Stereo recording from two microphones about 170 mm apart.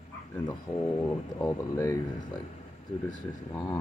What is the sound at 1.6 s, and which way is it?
Speech, 15° left (ahead or behind).